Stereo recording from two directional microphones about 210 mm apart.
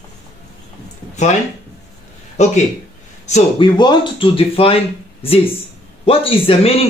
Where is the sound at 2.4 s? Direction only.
35° left (ahead or behind).